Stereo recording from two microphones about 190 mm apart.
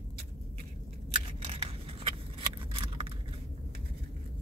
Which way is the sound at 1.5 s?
30° right (ahead or behind).